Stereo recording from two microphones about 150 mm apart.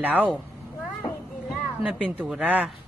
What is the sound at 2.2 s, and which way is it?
Speech, 10° right (ahead or behind).